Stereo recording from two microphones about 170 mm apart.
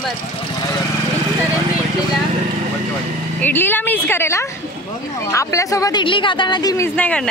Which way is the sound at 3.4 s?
10° left (ahead or behind).